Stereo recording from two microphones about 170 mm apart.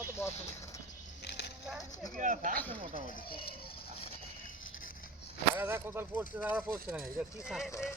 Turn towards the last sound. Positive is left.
turn(degrees=0)  # may be behind; listen again after turning